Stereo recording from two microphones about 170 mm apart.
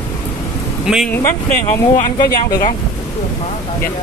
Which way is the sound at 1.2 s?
15° left (ahead or behind).